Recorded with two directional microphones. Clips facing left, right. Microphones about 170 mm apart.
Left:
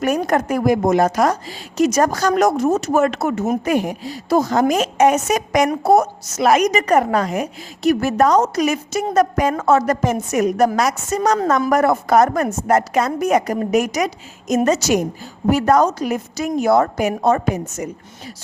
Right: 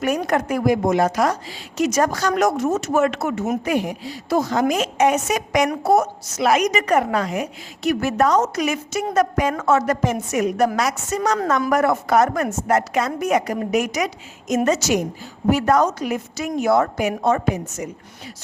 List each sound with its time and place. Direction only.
0.0 s a woman's voice: 40° left (ahead or behind)